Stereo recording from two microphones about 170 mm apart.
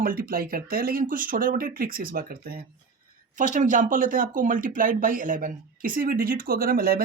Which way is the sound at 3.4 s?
50° right (ahead or behind).